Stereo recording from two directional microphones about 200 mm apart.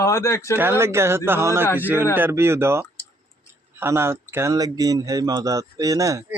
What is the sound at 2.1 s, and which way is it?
Speech, 10° right (ahead or behind).